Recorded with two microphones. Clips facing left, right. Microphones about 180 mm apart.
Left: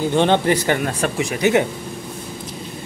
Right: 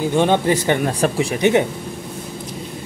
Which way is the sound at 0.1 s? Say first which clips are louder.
Even; 10° right (ahead or behind).